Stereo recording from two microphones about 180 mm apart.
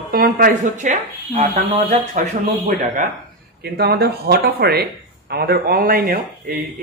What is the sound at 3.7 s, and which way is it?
Speech, 65° right (ahead or behind).